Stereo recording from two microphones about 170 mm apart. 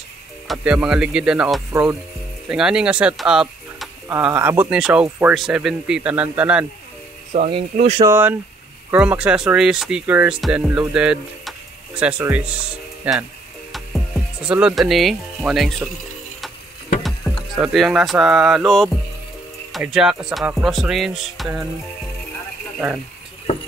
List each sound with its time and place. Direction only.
0.5 s speech: 5° right (ahead or behind)
7.3 s speech: 30° right (ahead or behind)
8.0 s speech: 15° right (ahead or behind)
17.0 s speech: centre (ahead or behind)